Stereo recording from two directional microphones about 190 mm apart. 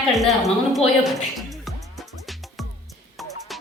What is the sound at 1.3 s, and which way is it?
Music, centre (ahead or behind).